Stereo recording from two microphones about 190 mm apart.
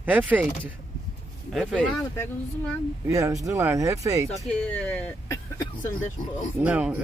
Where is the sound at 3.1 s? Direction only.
15° right (ahead or behind).